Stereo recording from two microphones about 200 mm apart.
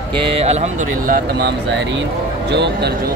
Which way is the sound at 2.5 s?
60° right (ahead or behind).